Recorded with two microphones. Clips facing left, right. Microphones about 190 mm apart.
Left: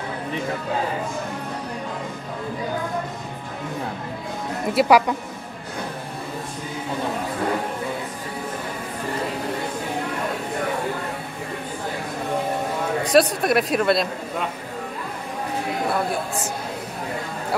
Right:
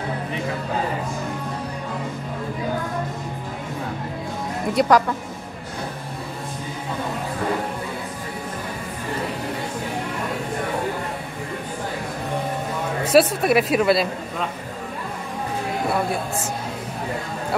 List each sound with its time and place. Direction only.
4.7 s speech: 10° left (ahead or behind)
13.1 s speech: 5° right (ahead or behind)